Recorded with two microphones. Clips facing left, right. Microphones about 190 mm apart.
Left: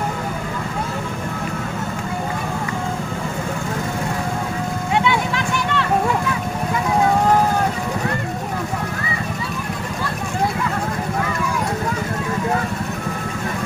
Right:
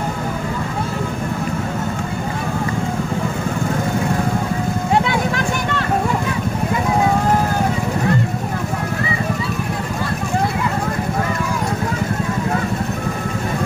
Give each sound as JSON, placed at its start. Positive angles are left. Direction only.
{"t": 5.0, "sound": "vehicle", "side_deg": -45}